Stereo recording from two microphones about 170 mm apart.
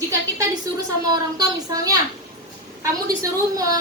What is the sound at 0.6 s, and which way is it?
A woman's voice, 20° right (ahead or behind).